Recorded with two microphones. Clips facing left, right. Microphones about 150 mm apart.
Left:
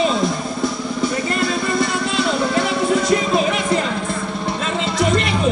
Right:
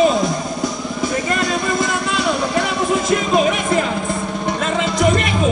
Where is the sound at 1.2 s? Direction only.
45° right (ahead or behind).